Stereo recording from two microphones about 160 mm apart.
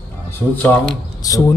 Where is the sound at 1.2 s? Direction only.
20° left (ahead or behind).